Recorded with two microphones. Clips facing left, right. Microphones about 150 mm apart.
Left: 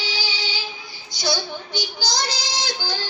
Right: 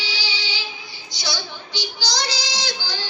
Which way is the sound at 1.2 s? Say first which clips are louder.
Left 5 dB; 50° left (ahead or behind).